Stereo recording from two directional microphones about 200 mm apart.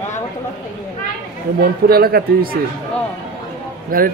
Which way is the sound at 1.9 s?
50° right (ahead or behind).